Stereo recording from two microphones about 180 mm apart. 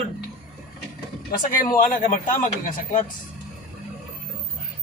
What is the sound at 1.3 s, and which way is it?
A man's voice, 50° left (ahead or behind).